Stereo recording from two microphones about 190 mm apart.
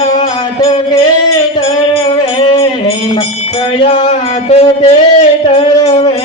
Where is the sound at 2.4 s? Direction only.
25° left (ahead or behind).